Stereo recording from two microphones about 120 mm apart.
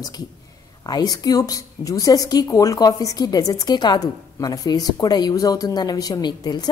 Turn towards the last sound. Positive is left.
turn(degrees=35)  # may be behind; listen again after turning